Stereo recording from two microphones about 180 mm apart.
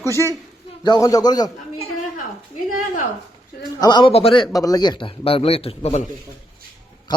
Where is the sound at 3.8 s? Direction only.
25° left (ahead or behind).